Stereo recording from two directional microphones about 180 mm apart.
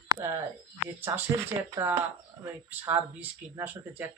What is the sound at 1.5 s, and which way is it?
Speech, 20° right (ahead or behind).